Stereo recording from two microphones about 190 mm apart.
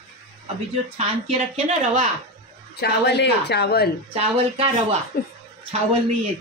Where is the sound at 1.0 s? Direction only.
35° right (ahead or behind).